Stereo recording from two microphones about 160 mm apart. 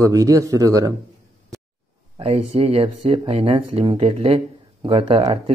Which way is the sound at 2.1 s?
40° right (ahead or behind).